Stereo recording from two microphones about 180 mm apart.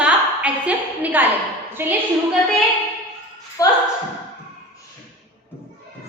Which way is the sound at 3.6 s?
20° left (ahead or behind).